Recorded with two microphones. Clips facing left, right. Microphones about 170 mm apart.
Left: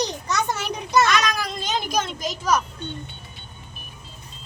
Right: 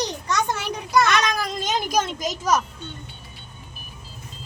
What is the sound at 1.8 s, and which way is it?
Speech, 40° right (ahead or behind).